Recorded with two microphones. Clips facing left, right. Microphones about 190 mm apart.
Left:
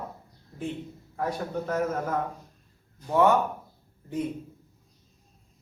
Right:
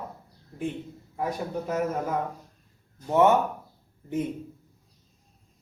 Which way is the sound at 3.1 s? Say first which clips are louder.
Right 1 dB; 20° right (ahead or behind).